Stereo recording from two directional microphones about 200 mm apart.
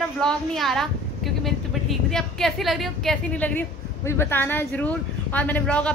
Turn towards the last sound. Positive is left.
turn(degrees=5)  # may be behind; listen again after turning